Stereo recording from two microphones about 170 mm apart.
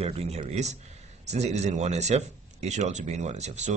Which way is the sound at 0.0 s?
35° right (ahead or behind).